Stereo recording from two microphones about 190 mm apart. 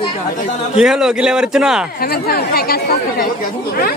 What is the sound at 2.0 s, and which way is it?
Speech, 55° left (ahead or behind).